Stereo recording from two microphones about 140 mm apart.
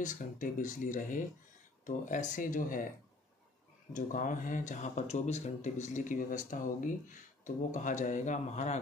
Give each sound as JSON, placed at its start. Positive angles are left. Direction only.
{"t": 0.0, "sound": "speech", "side_deg": 65}
{"t": 3.9, "sound": "speech", "side_deg": 70}